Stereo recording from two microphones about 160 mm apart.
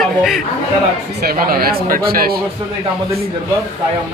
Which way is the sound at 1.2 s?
70° right (ahead or behind).